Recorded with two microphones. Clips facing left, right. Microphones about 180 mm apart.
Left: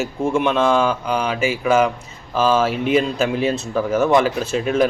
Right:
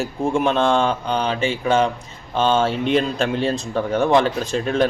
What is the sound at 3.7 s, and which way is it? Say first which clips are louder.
Speech: left 1 dB; 30° right (ahead or behind).